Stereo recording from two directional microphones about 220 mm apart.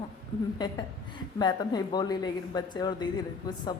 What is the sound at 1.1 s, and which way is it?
A woman's voice, 20° left (ahead or behind).